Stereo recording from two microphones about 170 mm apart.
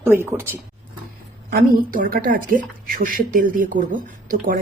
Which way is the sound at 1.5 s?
55° right (ahead or behind).